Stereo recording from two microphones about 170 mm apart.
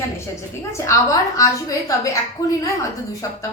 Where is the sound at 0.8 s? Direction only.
20° left (ahead or behind).